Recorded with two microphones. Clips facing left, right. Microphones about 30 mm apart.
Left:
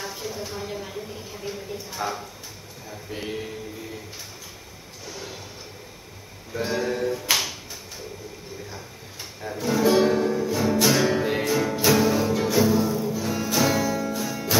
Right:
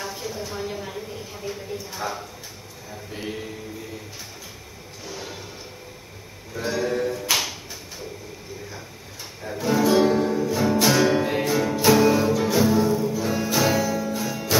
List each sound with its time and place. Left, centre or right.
0.0 s a sound: centre
5.1 s music: centre
6.5 s music: centre
6.8 s music: centre
9.4 s music: centre